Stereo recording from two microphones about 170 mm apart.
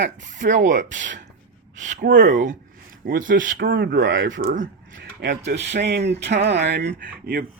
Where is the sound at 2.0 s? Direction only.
85° right.